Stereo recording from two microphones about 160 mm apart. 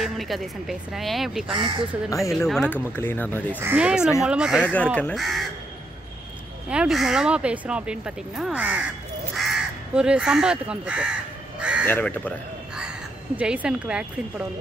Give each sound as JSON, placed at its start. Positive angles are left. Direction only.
{"t": 0.0, "sound": "speech", "side_deg": 0}
{"t": 1.5, "sound": "speech", "side_deg": -30}
{"t": 2.3, "sound": "speech", "side_deg": 0}
{"t": 2.7, "sound": "speech", "side_deg": 15}
{"t": 3.5, "sound": "speech", "side_deg": -10}
{"t": 6.7, "sound": "speech", "side_deg": -5}
{"t": 11.8, "sound": "speech", "side_deg": 10}
{"t": 13.4, "sound": "speech", "side_deg": -5}